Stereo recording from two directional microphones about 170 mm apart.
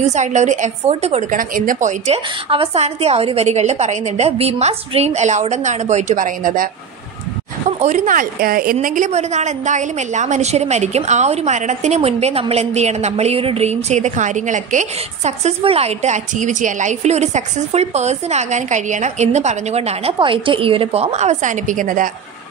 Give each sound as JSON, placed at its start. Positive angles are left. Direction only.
{"t": 0.0, "sound": "a woman's voice", "side_deg": -45}
{"t": 2.5, "sound": "a woman's voice", "side_deg": -35}
{"t": 7.8, "sound": "a woman's voice", "side_deg": -45}